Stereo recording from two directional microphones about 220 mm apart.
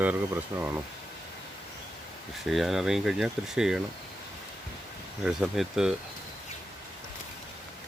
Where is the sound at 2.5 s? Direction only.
Centre (ahead or behind).